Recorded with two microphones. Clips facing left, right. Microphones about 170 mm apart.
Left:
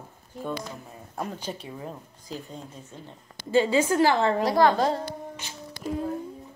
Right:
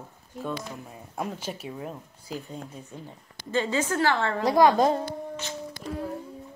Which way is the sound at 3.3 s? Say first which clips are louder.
Left 5 dB; 10° left (ahead or behind).